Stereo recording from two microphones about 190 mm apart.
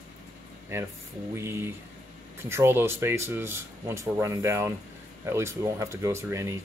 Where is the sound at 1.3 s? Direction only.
15° right (ahead or behind).